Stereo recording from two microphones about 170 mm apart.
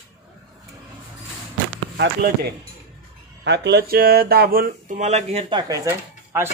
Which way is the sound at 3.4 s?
90° right.